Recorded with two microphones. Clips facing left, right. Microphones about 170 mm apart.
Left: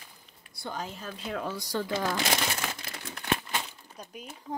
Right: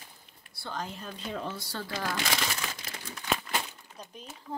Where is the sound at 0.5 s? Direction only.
15° left (ahead or behind).